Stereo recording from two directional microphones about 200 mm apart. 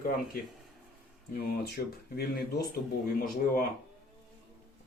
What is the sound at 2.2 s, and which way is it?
Speech, 50° left (ahead or behind).